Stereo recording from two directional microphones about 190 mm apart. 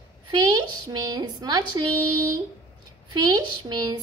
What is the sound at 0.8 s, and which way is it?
Speech, 20° right (ahead or behind).